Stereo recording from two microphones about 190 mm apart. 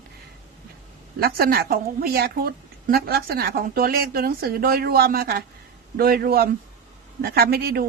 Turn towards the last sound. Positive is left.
turn(degrees=-55)  # may be behind; listen again after turning